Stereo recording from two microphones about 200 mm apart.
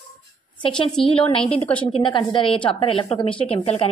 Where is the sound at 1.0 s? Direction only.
25° left (ahead or behind).